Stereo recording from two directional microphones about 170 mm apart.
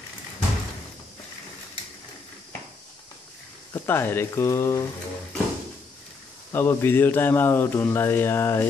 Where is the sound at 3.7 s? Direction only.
15° left (ahead or behind).